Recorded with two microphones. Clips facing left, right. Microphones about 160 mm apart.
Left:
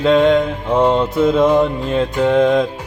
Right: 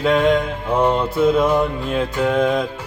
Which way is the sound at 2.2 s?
25° left (ahead or behind).